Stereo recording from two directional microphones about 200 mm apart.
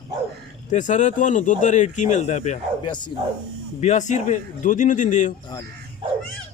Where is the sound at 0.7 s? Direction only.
40° left (ahead or behind).